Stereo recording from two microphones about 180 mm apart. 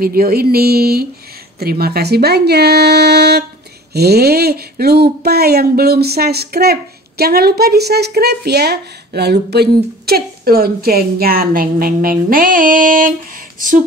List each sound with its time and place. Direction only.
0.0 s speech: 55° right (ahead or behind)